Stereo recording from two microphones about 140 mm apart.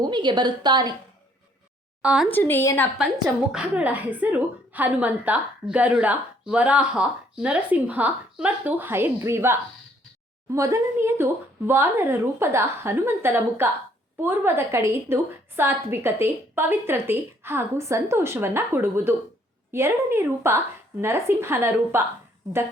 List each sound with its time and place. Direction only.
0.0 s a woman's voice: 30° right (ahead or behind)
2.0 s a woman's voice: 5° right (ahead or behind)
2.3 s a woman's voice: 15° left (ahead or behind)
3.5 s a woman's voice: 10° right (ahead or behind)